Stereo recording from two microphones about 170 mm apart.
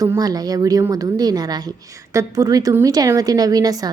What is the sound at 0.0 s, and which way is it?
A woman's voice, 20° right (ahead or behind).